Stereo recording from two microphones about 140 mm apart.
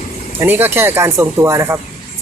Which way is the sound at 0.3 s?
15° right (ahead or behind).